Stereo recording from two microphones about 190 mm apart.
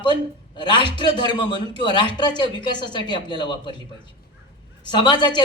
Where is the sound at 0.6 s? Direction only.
25° left (ahead or behind).